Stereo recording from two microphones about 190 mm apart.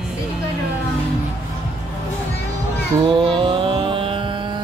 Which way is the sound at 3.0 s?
25° right (ahead or behind).